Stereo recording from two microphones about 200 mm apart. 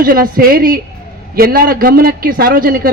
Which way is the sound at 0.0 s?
45° right (ahead or behind).